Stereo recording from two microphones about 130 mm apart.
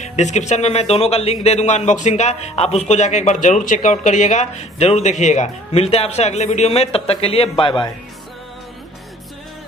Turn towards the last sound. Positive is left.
turn(degrees=35)  # may be behind; listen again after turning